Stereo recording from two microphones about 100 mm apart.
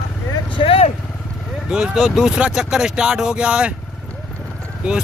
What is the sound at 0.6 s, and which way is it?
Vehicle, 75° left (ahead or behind).